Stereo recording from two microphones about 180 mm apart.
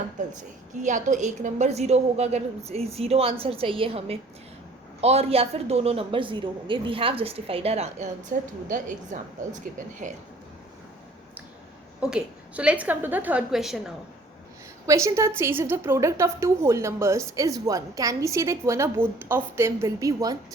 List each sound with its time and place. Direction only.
0.2 s a woman's voice: 45° right (ahead or behind)
8.3 s a woman's voice: 50° right (ahead or behind)
11.9 s a woman's voice: 5° right (ahead or behind)
14.8 s a woman's voice: 15° right (ahead or behind)